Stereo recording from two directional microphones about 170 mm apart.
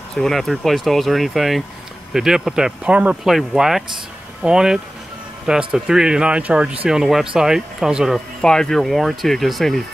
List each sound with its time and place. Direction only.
0.1 s speech: centre (ahead or behind)